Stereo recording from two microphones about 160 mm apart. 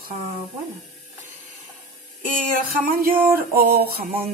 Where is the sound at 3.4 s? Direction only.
70° right (ahead or behind).